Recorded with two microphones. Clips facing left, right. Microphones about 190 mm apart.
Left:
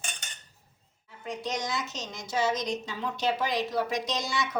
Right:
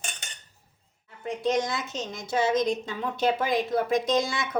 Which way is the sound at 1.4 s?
55° right (ahead or behind).